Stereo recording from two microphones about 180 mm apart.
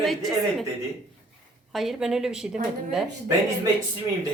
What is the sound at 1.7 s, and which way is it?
Speech, centre (ahead or behind).